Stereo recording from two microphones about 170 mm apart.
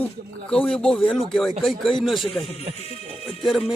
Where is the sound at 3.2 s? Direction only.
Centre (ahead or behind).